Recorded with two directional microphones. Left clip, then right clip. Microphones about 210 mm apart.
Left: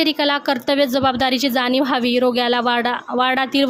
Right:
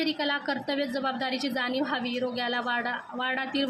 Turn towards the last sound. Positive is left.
turn(degrees=50)  # may be behind; listen again after turning